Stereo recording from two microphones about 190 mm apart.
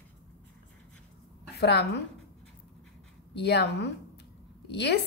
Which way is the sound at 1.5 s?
60° left (ahead or behind).